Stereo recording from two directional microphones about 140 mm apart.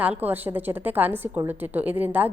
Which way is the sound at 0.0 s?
10° right (ahead or behind).